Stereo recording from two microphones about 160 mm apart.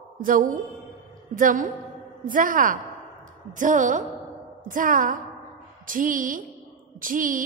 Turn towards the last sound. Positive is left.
turn(degrees=-60)  # may be behind; listen again after turning